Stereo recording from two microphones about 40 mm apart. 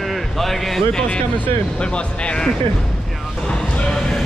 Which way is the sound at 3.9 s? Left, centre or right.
Centre.